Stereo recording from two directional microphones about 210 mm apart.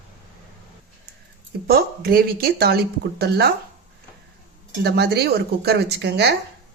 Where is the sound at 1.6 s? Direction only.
45° right (ahead or behind).